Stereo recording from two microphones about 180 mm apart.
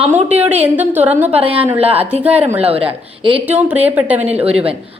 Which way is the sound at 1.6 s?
10° right (ahead or behind).